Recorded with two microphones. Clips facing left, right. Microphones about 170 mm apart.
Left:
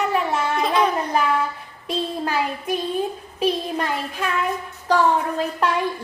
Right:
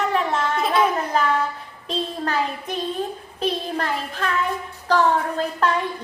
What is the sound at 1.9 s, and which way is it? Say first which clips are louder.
Child singing: left 1 dB; 10° left (ahead or behind).